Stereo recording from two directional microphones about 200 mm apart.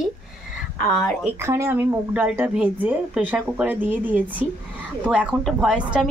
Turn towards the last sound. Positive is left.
turn(degrees=-5)  # may be behind; listen again after turning